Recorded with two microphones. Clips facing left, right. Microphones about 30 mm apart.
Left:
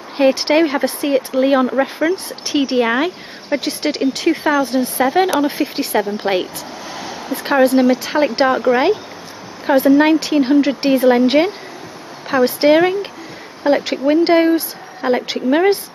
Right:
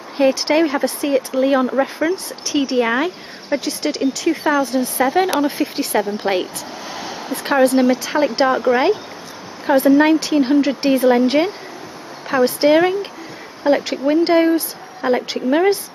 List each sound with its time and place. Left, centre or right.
0.2 s speech: left; by 2.1 s centre
2.4 s speech: left
3.6 s speech: left
4.4 s speech: centre
8.0 s speech: centre